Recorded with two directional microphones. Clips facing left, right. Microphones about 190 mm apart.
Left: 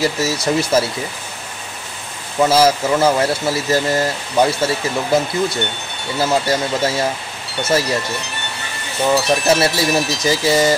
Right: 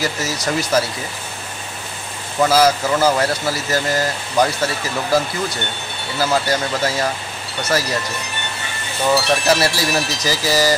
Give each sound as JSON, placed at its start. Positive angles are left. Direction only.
{"t": 0.0, "sound": "speech", "side_deg": 25}
{"t": 2.4, "sound": "speech", "side_deg": 25}
{"t": 9.1, "sound": "speech", "side_deg": 20}